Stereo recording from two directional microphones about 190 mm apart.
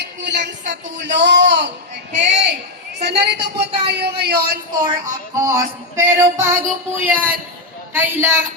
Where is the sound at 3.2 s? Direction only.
65° right (ahead or behind).